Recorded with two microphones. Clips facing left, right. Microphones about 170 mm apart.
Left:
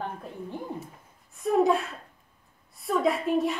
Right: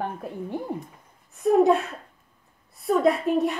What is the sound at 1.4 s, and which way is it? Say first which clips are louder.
A woman's voice: right 4 dB; centre (ahead or behind).